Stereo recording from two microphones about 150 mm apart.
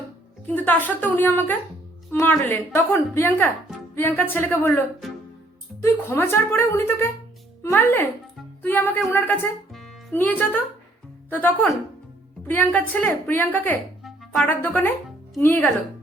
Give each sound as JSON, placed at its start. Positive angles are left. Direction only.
{"t": 0.5, "sound": "a woman's voice", "side_deg": 10}
{"t": 5.8, "sound": "a woman's voice", "side_deg": 15}